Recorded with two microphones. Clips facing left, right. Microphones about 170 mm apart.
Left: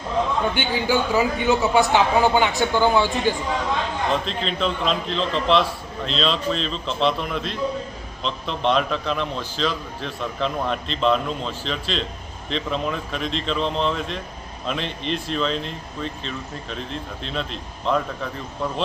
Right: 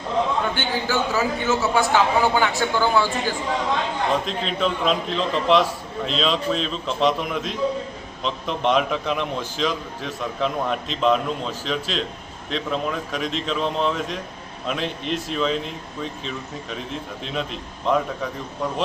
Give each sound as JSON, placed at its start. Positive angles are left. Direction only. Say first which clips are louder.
{"t": 0.5, "sound": "a man's voice", "louder": "left 2 dB", "side_deg": 15}
{"t": 4.1, "sound": "speech", "louder": "even", "side_deg": -10}